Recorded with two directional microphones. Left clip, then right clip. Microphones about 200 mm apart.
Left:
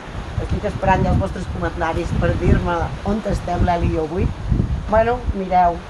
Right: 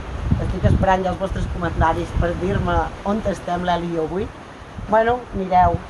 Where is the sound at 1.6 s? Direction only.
25° left (ahead or behind).